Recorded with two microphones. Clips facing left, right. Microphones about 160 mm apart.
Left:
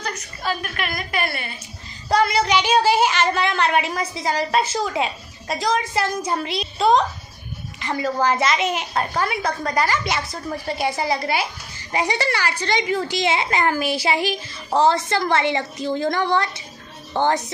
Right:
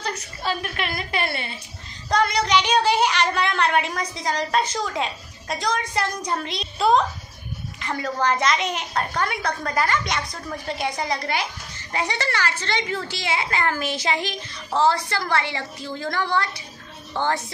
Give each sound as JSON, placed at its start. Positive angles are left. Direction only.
{"t": 0.0, "sound": "a woman's voice", "side_deg": -30}
{"t": 2.0, "sound": "a woman's voice", "side_deg": 5}
{"t": 14.8, "sound": "a woman's voice", "side_deg": 20}